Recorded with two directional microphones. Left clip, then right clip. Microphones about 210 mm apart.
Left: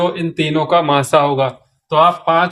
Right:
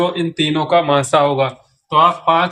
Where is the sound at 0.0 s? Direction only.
25° left (ahead or behind).